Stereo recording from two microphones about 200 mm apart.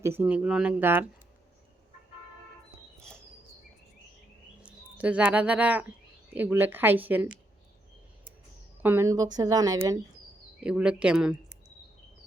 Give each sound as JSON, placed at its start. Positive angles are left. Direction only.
{"t": 0.0, "sound": "speech", "side_deg": -10}
{"t": 4.6, "sound": "speech", "side_deg": -5}
{"t": 8.8, "sound": "speech", "side_deg": -10}
{"t": 10.6, "sound": "speech", "side_deg": -5}